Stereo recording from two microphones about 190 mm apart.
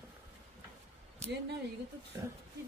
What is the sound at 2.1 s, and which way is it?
Speech, 15° right (ahead or behind).